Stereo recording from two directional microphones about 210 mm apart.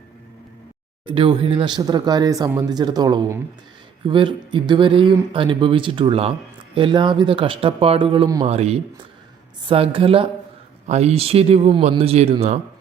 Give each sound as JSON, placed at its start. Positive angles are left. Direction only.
{"t": 1.0, "sound": "speech", "side_deg": -25}